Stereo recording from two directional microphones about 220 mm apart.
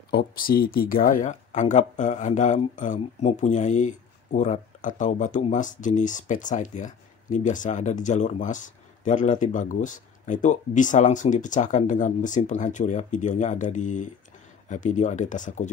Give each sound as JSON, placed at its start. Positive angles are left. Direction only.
{"t": 0.1, "sound": "speech", "side_deg": 45}